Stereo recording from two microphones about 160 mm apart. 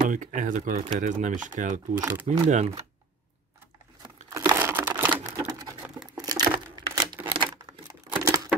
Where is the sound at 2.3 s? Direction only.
50° right (ahead or behind).